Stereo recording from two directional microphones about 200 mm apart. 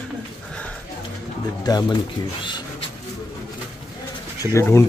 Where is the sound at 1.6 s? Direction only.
20° left (ahead or behind).